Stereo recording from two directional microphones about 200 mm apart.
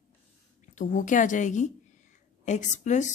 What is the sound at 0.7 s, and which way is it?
Speech, 40° left (ahead or behind).